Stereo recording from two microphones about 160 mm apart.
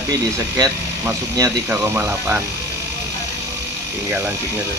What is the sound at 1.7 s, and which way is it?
Speech, 10° right (ahead or behind).